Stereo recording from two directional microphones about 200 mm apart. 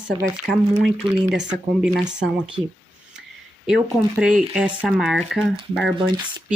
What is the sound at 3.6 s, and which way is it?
Speech, 5° right (ahead or behind).